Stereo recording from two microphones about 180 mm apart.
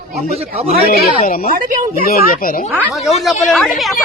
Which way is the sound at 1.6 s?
45° right (ahead or behind).